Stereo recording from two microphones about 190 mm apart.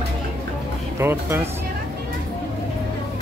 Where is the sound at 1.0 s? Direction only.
10° right (ahead or behind).